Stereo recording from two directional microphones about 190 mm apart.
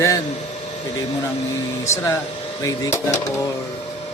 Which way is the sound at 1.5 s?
15° left (ahead or behind).